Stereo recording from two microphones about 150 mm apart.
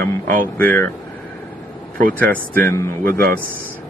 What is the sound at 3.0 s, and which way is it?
Speech, 80° right.